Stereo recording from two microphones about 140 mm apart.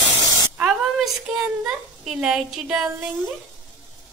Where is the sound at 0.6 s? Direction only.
5° right (ahead or behind).